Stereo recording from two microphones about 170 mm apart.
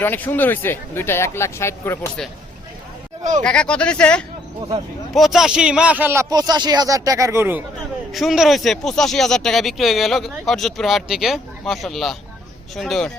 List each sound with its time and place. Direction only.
0.0 s speech: 10° left (ahead or behind)
3.4 s speech: 5° left (ahead or behind); by 6.2 s 10° right (ahead or behind)
6.3 s speech: 25° right (ahead or behind)
8.1 s speech: centre (ahead or behind)